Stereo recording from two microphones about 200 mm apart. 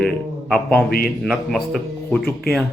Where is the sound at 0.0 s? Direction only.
Centre (ahead or behind).